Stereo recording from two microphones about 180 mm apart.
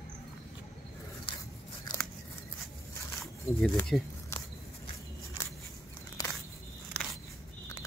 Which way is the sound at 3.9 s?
Centre (ahead or behind).